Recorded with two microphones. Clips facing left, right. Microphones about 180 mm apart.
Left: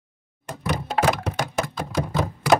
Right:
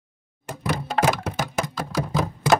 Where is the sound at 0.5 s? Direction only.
Centre (ahead or behind).